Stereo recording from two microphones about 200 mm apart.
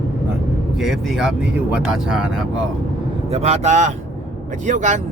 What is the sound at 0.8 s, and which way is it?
Speech, centre (ahead or behind).